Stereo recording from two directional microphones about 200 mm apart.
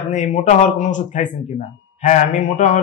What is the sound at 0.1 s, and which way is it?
Speech, 35° left (ahead or behind).